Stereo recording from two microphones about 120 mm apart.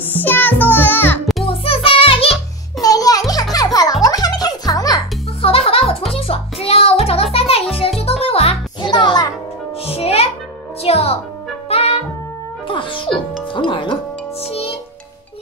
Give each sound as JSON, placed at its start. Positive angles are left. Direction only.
{"t": 0.1, "sound": "music", "side_deg": 15}
{"t": 1.4, "sound": "music", "side_deg": 50}
{"t": 2.8, "sound": "music", "side_deg": 30}
{"t": 5.4, "sound": "music", "side_deg": 55}
{"t": 8.8, "sound": "music", "side_deg": 40}
{"t": 9.8, "sound": "music", "side_deg": 55}
{"t": 11.7, "sound": "brass instrument", "side_deg": 55}
{"t": 12.6, "sound": "music", "side_deg": 45}